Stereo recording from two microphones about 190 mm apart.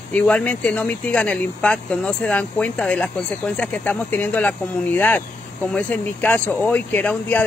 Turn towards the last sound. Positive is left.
turn(degrees=10)  # may be behind; listen again after turning